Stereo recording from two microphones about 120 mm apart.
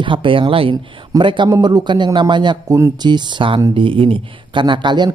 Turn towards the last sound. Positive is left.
turn(degrees=-40)  # may be behind; listen again after turning